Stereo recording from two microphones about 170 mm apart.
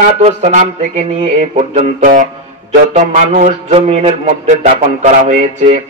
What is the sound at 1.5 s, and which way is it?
Music, 50° right (ahead or behind).